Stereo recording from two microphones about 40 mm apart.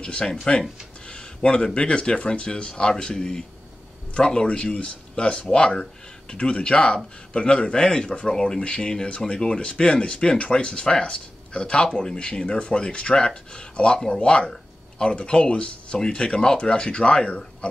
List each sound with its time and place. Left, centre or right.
0.0 s speech: left
14.2 s a sound: left
15.1 s speech: left